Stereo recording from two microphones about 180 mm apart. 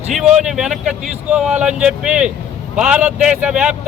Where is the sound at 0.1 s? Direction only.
Centre (ahead or behind).